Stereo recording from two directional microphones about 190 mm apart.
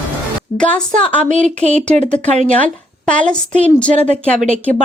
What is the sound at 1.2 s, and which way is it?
Speech, 40° right (ahead or behind).